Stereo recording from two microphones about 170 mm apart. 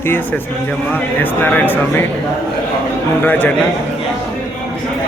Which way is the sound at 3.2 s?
10° left (ahead or behind).